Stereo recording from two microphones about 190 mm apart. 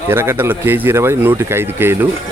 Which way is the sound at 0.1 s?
10° right (ahead or behind).